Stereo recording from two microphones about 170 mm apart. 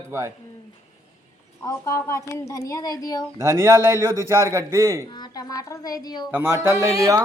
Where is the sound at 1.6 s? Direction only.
20° left (ahead or behind).